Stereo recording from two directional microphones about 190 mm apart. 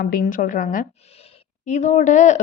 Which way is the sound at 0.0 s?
45° left (ahead or behind).